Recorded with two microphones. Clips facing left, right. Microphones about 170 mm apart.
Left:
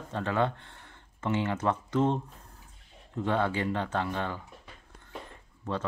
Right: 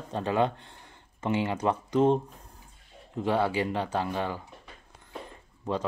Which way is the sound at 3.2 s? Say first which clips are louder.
Right 2 dB; 10° right (ahead or behind).